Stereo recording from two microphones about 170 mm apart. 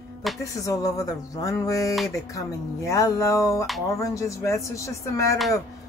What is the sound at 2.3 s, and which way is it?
Speech, 20° left (ahead or behind).